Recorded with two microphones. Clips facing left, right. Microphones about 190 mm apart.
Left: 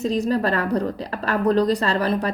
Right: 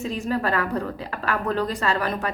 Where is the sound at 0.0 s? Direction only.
35° left (ahead or behind).